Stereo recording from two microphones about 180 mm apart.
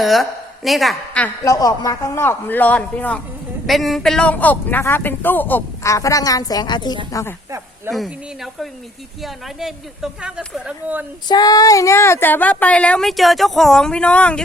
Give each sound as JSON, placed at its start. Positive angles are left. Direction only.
{"t": 0.0, "sound": "a woman's voice", "side_deg": 0}
{"t": 1.5, "sound": "speech", "side_deg": 20}
{"t": 7.9, "sound": "a woman's voice", "side_deg": 0}
{"t": 11.3, "sound": "speech", "side_deg": 20}